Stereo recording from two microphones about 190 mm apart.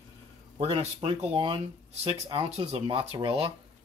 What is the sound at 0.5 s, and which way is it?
Speech, 30° right (ahead or behind).